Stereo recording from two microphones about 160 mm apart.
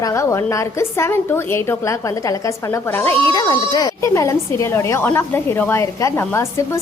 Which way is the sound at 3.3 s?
25° left (ahead or behind).